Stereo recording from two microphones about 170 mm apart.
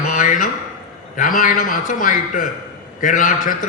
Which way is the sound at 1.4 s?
55° left (ahead or behind).